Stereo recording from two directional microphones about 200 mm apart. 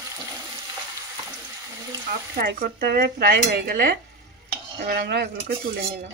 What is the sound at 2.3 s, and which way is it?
Speech, 45° right (ahead or behind).